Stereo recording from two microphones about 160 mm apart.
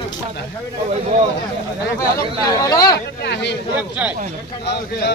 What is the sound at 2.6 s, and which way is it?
Speech, 25° left (ahead or behind).